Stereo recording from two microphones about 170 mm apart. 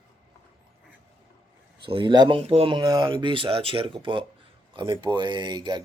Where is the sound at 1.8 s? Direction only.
30° right (ahead or behind).